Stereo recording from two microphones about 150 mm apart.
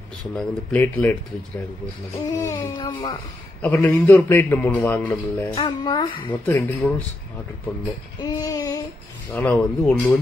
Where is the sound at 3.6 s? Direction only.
10° left (ahead or behind).